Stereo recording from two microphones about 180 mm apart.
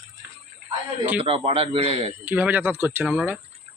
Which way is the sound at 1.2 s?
35° right (ahead or behind).